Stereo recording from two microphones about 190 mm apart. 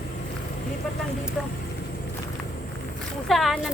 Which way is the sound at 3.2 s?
Centre (ahead or behind).